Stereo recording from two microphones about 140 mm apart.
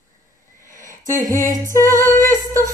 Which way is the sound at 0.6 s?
70° right (ahead or behind).